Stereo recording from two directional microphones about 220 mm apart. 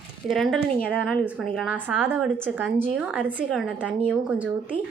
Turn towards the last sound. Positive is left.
turn(degrees=-5)  # may be behind; listen again after turning